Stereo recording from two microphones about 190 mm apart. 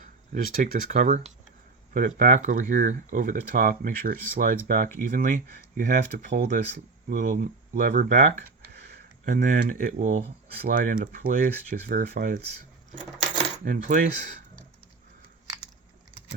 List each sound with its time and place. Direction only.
0.0 s speech: 45° right (ahead or behind)
13.1 s coin: 35° right (ahead or behind)